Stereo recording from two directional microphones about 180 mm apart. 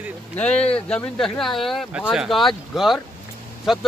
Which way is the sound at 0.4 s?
5° left (ahead or behind).